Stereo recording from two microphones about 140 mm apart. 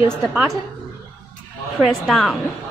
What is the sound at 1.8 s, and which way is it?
Speech, centre (ahead or behind).